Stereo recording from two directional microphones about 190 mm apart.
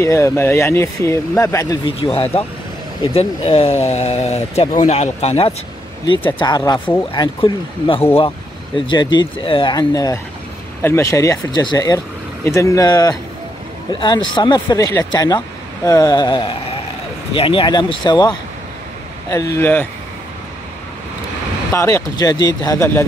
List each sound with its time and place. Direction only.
0.0 s speech: 15° left (ahead or behind); by 5.5 s 35° left (ahead or behind)
6.3 s speech: 20° left (ahead or behind)
21.7 s speech: 15° left (ahead or behind)